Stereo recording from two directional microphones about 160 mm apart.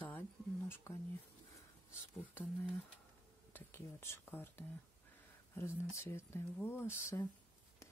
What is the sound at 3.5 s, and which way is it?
Speech, 15° left (ahead or behind).